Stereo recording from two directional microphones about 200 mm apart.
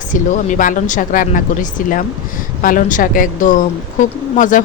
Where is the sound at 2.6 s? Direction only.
40° left (ahead or behind).